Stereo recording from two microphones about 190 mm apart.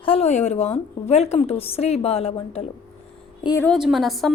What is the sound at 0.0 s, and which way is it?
A woman's voice, 30° left (ahead or behind).